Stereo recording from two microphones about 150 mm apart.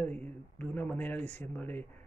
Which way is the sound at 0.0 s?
10° left (ahead or behind).